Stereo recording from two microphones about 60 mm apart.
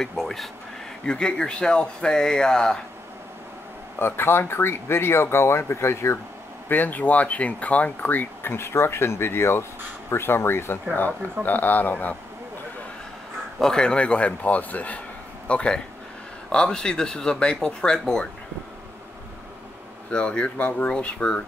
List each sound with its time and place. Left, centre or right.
0.0 s speech: centre
4.0 s speech: left
6.7 s speech: left
11.4 s speech: left
13.6 s speech: centre
20.1 s speech: centre